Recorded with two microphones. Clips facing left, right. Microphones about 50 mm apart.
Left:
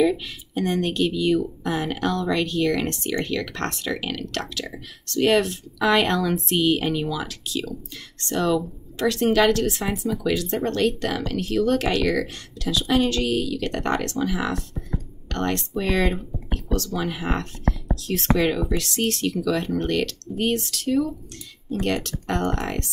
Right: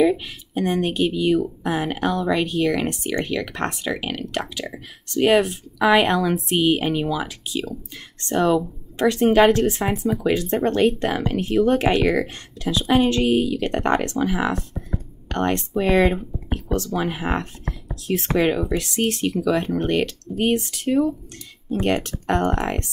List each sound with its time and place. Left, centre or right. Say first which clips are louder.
0.0 s speech: right 2 dB; centre
16.6 s speech: right 3 dB; right